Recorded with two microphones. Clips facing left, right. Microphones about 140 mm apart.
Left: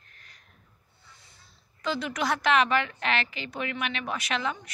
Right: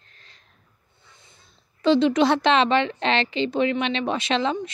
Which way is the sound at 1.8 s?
25° right (ahead or behind).